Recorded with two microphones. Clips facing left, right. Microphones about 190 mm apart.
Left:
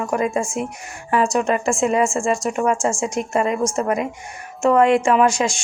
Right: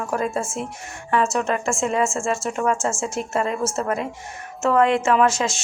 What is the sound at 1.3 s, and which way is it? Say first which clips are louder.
A woman's voice: left 4 dB; centre (ahead or behind).